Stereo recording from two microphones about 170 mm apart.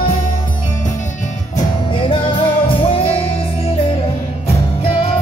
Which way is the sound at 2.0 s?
30° left (ahead or behind).